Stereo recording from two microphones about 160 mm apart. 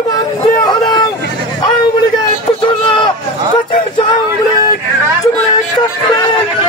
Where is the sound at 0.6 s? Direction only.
30° left (ahead or behind).